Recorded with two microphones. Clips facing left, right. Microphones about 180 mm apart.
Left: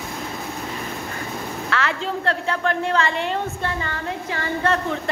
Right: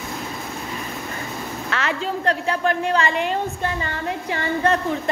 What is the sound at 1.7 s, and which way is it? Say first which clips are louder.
A woman's voice: even; 20° right (ahead or behind).